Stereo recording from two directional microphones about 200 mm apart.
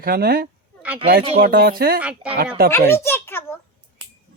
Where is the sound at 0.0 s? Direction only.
50° right (ahead or behind).